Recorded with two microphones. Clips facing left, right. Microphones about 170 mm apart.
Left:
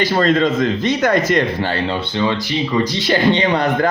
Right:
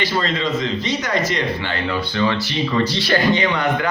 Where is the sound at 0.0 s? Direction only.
50° left (ahead or behind).